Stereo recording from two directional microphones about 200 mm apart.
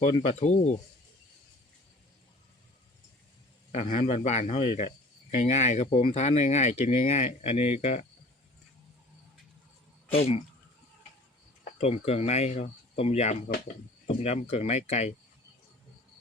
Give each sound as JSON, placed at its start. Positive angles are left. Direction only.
{"t": 0.0, "sound": "speech", "side_deg": 30}
{"t": 3.7, "sound": "speech", "side_deg": 35}
{"t": 10.1, "sound": "speech", "side_deg": 30}
{"t": 11.6, "sound": "speech", "side_deg": 30}